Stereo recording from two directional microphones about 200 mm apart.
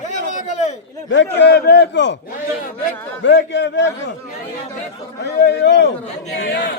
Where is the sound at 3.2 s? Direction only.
60° left (ahead or behind).